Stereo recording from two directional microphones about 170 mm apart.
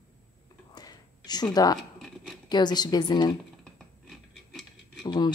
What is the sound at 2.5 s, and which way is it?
Speech, 25° left (ahead or behind).